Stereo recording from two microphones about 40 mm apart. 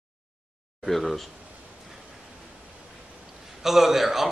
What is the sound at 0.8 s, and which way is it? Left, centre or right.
Speech, centre.